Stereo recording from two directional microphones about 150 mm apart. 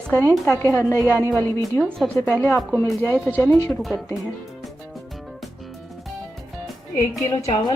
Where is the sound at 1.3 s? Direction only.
15° left (ahead or behind).